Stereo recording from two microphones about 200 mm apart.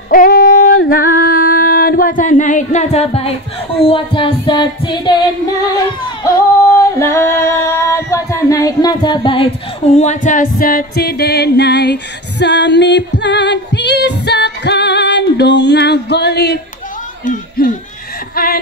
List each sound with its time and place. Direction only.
0.1 s singing: 45° left (ahead or behind)
3.8 s music: 25° left (ahead or behind)
7.0 s singing: 15° left (ahead or behind)
9.9 s music: 40° left (ahead or behind); by 16.5 s 55° left (ahead or behind)
17.2 s a sound: 40° left (ahead or behind)